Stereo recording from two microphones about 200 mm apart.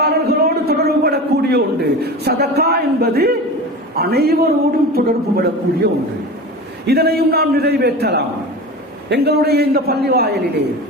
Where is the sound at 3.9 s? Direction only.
55° right (ahead or behind).